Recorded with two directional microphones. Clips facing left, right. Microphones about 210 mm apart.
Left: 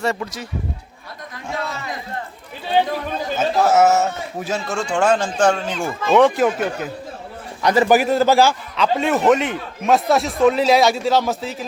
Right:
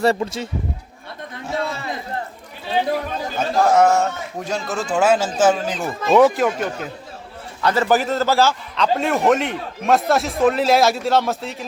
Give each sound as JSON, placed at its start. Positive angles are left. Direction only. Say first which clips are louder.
{"t": 0.0, "sound": "a man's voice", "louder": "right 5 dB", "side_deg": -30}
{"t": 1.5, "sound": "a sound", "louder": "right 3 dB", "side_deg": -30}
{"t": 3.3, "sound": "a man's voice", "louder": "even", "side_deg": 5}
{"t": 7.6, "sound": "a man's voice", "louder": "left 3 dB", "side_deg": 15}